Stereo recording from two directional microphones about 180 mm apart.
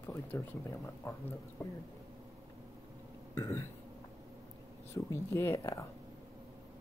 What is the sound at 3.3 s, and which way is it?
Burping, 20° left (ahead or behind).